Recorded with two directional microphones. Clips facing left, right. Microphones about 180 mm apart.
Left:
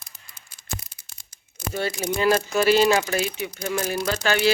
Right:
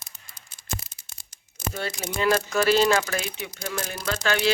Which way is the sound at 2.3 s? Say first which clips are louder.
Left 1 dB; 25° left (ahead or behind).